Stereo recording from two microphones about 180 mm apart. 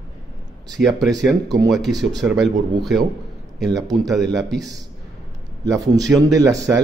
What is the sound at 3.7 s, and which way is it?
Speech, 20° right (ahead or behind).